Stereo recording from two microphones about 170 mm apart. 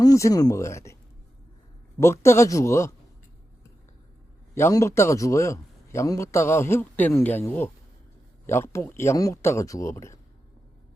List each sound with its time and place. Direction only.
0.0 s a man's voice: 20° left (ahead or behind)
2.0 s a man's voice: 15° left (ahead or behind)
4.5 s a man's voice: 15° left (ahead or behind)